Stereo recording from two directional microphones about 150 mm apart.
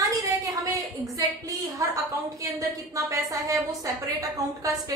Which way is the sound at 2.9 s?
20° right (ahead or behind).